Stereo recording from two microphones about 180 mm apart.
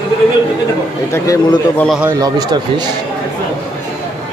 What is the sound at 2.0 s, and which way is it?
Speech, 20° right (ahead or behind).